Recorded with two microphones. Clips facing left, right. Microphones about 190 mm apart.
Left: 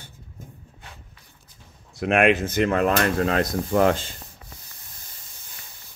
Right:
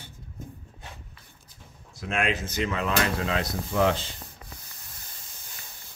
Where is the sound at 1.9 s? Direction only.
65° left (ahead or behind); by 4.1 s 50° left (ahead or behind).